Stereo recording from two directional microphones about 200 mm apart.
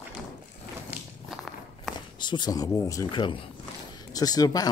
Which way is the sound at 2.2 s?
20° left (ahead or behind).